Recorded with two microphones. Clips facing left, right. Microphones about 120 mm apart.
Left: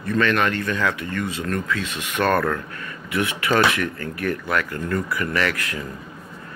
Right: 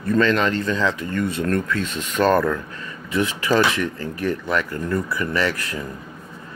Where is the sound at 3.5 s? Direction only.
25° right (ahead or behind).